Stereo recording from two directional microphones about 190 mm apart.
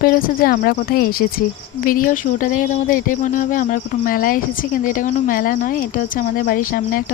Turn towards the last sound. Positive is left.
turn(degrees=45)  # may be behind; listen again after turning